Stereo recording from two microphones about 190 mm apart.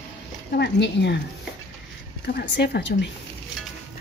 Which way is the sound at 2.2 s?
60° left (ahead or behind).